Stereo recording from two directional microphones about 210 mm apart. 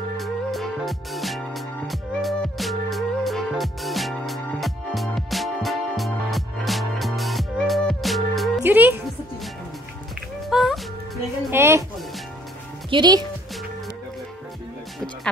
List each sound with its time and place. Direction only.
0.2 s music: centre (ahead or behind)
10.5 s music: centre (ahead or behind)
12.9 s speech: 20° right (ahead or behind)